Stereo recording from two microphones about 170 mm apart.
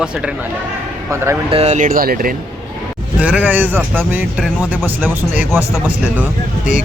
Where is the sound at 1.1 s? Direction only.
15° right (ahead or behind).